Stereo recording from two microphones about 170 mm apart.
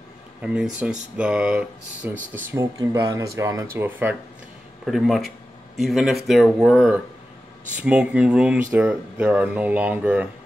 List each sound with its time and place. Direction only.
0.4 s speech: 5° right (ahead or behind)
2.3 s speech: 15° right (ahead or behind)
4.8 s speech: centre (ahead or behind)